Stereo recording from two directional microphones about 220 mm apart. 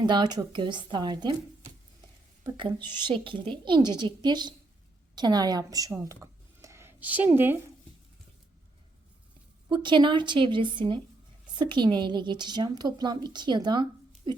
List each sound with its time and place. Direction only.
0.0 s a woman's voice: 20° right (ahead or behind)
2.4 s a woman's voice: 20° right (ahead or behind)
9.6 s a woman's voice: 20° right (ahead or behind)
14.3 s a sound: 20° right (ahead or behind)